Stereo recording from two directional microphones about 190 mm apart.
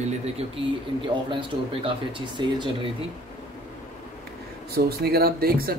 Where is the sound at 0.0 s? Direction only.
35° right (ahead or behind).